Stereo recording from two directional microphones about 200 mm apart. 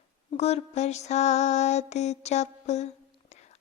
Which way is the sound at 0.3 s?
30° left (ahead or behind).